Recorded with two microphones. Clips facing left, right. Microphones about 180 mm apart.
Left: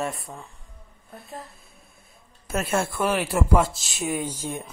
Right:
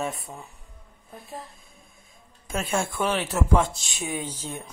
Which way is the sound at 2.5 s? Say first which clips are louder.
Left 2 dB; 5° left (ahead or behind).